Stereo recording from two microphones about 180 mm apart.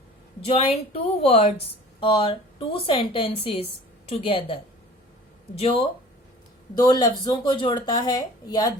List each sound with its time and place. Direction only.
0.4 s speech: 35° left (ahead or behind)
5.5 s speech: 35° left (ahead or behind)
6.7 s speech: 20° left (ahead or behind)